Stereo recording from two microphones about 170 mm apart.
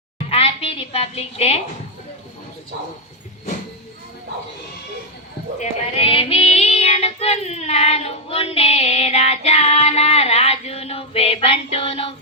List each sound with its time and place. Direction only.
0.3 s a woman's voice: 35° left (ahead or behind)
5.5 s child singing: 35° left (ahead or behind)